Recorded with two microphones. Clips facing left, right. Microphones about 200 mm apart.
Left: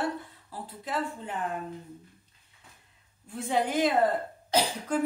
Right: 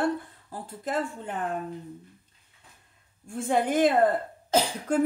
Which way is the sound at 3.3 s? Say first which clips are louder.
Right 3 dB; 50° right (ahead or behind).